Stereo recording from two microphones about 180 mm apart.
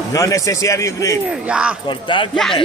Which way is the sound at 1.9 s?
25° left (ahead or behind).